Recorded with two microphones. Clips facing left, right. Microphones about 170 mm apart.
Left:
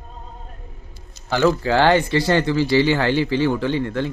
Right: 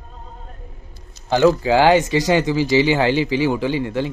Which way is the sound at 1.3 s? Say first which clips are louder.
Right 3 dB; 15° right (ahead or behind).